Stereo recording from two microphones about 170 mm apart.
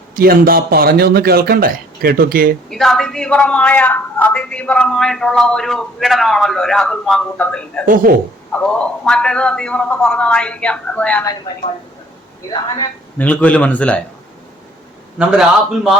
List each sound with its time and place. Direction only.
0.2 s speech: 60° right (ahead or behind)
2.6 s a man's voice: centre (ahead or behind)
7.9 s speech: 55° right (ahead or behind)
8.5 s a man's voice: 5° left (ahead or behind)
13.1 s a man's voice: 10° left (ahead or behind)
15.2 s a man's voice: 5° right (ahead or behind)